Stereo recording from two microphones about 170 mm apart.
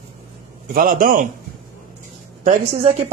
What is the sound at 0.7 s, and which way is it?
Speech, 55° right (ahead or behind).